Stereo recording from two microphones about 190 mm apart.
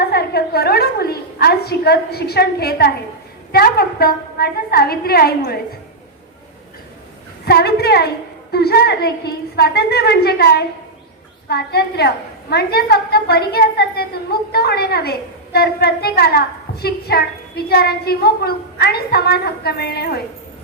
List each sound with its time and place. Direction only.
0.1 s a woman's voice: 55° left (ahead or behind)
7.4 s a woman's voice: 55° left (ahead or behind)